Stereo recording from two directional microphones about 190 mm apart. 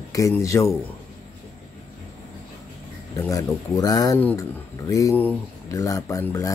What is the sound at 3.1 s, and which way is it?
Speech, 15° left (ahead or behind).